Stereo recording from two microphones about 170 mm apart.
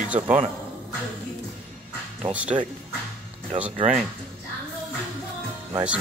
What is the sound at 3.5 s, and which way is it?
Speech, 35° right (ahead or behind).